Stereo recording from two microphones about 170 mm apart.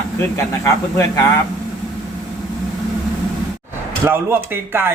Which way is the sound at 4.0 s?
15° right (ahead or behind).